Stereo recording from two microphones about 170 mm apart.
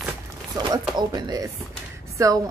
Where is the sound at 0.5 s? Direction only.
25° right (ahead or behind).